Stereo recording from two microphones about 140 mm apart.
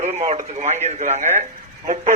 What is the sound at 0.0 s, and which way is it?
A man's voice, 50° right (ahead or behind).